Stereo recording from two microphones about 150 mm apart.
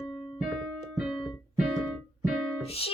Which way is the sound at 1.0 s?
Centre (ahead or behind).